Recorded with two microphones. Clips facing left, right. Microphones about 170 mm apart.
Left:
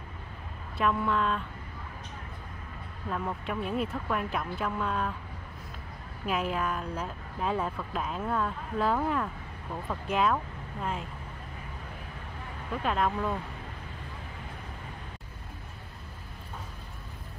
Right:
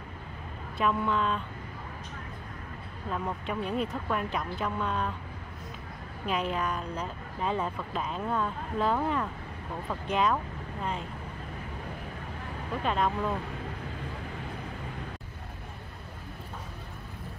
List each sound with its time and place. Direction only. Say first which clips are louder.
0.7 s speech: even; centre (ahead or behind)
3.1 s speech: even; centre (ahead or behind)
6.2 s speech: even; 5° left (ahead or behind)
12.8 s speech: even; centre (ahead or behind)